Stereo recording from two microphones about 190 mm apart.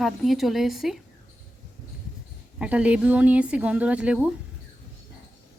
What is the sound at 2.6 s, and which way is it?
A woman's voice, 5° right (ahead or behind).